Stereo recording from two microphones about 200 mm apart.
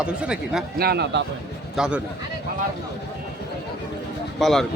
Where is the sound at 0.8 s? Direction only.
55° right (ahead or behind).